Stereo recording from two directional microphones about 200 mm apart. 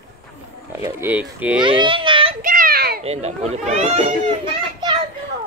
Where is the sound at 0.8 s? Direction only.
10° right (ahead or behind).